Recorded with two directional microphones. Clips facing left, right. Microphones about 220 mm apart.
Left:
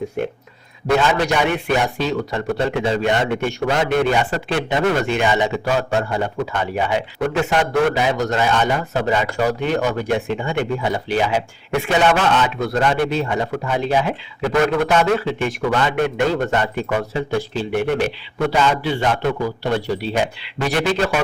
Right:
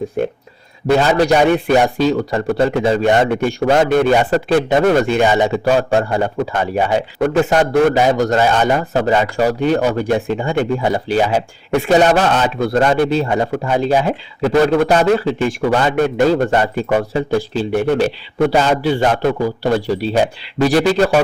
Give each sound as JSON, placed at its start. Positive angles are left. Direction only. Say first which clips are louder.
{"t": 0.9, "sound": "a man's voice", "louder": "right 5 dB", "side_deg": -35}